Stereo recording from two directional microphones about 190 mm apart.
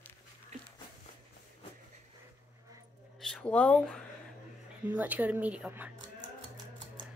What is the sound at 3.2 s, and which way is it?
Speech, 5° left (ahead or behind).